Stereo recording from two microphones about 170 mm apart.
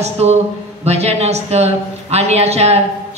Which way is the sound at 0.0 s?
40° right (ahead or behind).